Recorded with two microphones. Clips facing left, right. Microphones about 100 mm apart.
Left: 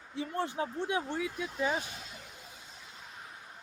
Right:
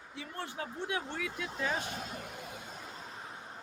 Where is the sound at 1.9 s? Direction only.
50° right (ahead or behind).